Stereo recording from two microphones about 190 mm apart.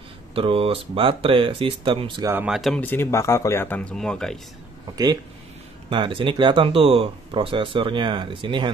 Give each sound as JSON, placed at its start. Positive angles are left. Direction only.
{"t": 0.3, "sound": "speech", "side_deg": -30}
{"t": 2.3, "sound": "speech", "side_deg": -5}
{"t": 4.9, "sound": "speech", "side_deg": -20}